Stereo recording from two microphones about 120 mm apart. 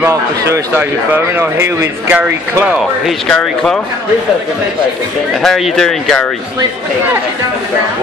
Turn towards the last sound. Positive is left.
turn(degrees=5)  # may be behind; listen again after turning